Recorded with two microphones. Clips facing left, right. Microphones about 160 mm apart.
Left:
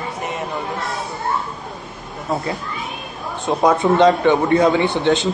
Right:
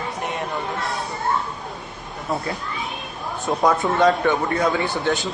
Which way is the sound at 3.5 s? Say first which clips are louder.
Left 5 dB; 20° left (ahead or behind).